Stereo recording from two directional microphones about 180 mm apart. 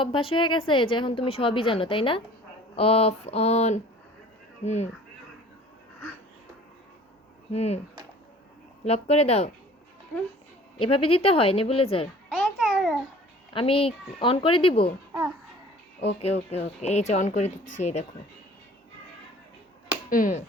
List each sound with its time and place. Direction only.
0.0 s a woman's voice: 30° left (ahead or behind)
7.5 s speech: 35° left (ahead or behind)
8.8 s speech: 35° left (ahead or behind)
10.8 s speech: 30° left (ahead or behind)
12.3 s babbling: centre (ahead or behind)
13.5 s speech: 30° left (ahead or behind)
16.2 s speech: 35° left (ahead or behind)
20.1 s speech: 50° left (ahead or behind)